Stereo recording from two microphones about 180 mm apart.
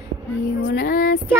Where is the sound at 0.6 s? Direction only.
50° left (ahead or behind).